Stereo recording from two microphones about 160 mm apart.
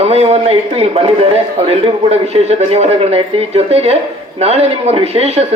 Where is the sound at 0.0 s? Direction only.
40° right (ahead or behind).